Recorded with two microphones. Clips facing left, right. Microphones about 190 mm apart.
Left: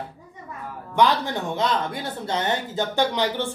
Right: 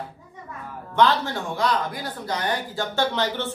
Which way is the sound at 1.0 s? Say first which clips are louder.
Even; 15° left (ahead or behind).